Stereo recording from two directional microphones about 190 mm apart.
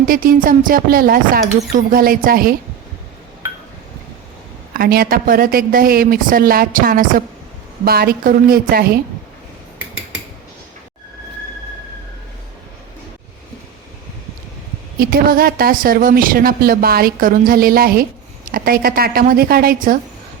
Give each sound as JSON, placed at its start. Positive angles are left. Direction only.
{"t": 0.0, "sound": "a woman's voice", "side_deg": -50}
{"t": 4.7, "sound": "a woman's voice", "side_deg": -50}
{"t": 14.9, "sound": "a woman's voice", "side_deg": -50}